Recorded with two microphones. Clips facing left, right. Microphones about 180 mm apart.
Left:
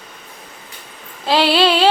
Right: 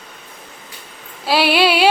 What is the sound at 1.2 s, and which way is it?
Child singing, 10° right (ahead or behind).